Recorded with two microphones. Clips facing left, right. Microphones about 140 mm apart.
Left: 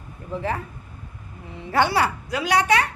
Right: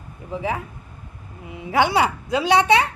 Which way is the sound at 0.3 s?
10° right (ahead or behind).